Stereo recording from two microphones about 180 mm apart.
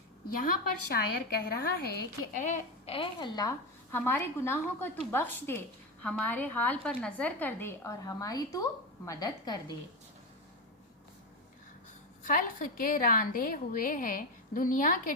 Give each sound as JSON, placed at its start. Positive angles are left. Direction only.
{"t": 0.4, "sound": "a woman's voice", "side_deg": 55}
{"t": 2.4, "sound": "speech", "side_deg": 40}
{"t": 3.9, "sound": "a woman's voice", "side_deg": 10}
{"t": 12.2, "sound": "a woman's voice", "side_deg": 45}